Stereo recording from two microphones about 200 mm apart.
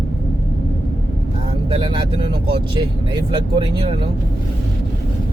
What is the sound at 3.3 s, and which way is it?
Speech, 25° right (ahead or behind).